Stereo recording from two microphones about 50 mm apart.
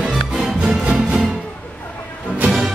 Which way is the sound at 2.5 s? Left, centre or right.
Centre.